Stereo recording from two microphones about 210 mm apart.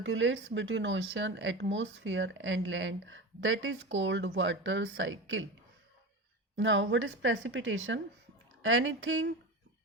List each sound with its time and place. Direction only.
0.0 s speech: 65° right (ahead or behind)
6.6 s speech: 60° right (ahead or behind)